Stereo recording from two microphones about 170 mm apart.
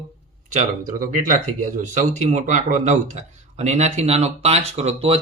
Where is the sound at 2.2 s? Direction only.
45° right (ahead or behind).